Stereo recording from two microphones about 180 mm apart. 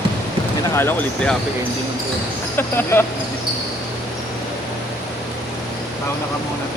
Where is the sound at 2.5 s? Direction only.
10° left (ahead or behind).